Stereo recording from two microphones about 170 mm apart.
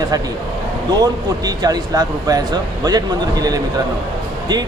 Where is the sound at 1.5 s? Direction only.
20° right (ahead or behind).